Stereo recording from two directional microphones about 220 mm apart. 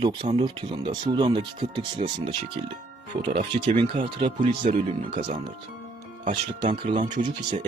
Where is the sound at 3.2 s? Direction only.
20° right (ahead or behind).